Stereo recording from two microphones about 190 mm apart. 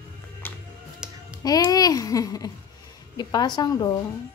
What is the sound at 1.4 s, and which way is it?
A child's voice, 20° left (ahead or behind).